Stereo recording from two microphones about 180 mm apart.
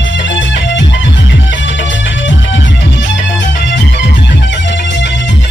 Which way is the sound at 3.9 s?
80° left.